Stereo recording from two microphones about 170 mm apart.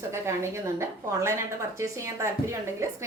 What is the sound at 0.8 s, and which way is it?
A woman's voice, 15° right (ahead or behind).